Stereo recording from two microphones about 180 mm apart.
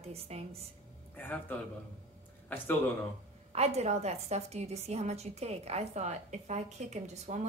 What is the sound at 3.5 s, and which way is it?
A woman's voice, 35° right (ahead or behind).